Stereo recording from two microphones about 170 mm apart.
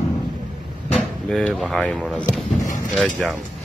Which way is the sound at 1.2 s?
5° left (ahead or behind).